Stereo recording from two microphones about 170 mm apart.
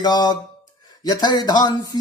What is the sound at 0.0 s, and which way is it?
Speech, 25° left (ahead or behind).